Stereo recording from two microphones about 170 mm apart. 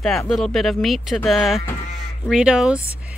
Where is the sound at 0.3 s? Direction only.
Centre (ahead or behind).